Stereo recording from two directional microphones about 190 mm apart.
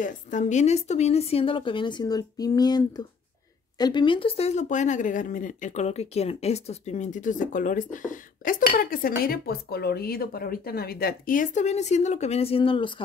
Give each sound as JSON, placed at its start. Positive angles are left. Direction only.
{"t": 0.0, "sound": "a woman's voice", "side_deg": 40}